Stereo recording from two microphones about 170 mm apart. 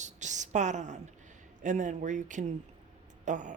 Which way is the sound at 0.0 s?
45° right (ahead or behind).